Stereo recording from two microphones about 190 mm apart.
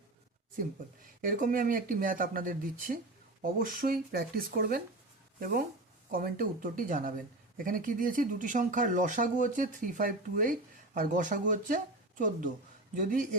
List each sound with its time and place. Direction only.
1.0 s speech: 45° right (ahead or behind)